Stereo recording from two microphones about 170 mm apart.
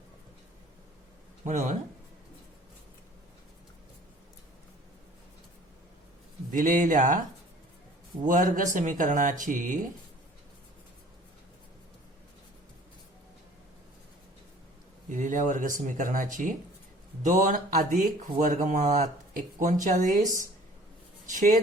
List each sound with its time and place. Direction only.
1.5 s speech: 45° right (ahead or behind)
6.5 s speech: 50° right (ahead or behind)
15.1 s speech: 45° right (ahead or behind)
21.3 s speech: 50° right (ahead or behind)